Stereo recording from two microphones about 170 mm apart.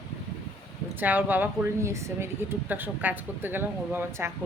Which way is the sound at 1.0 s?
10° right (ahead or behind).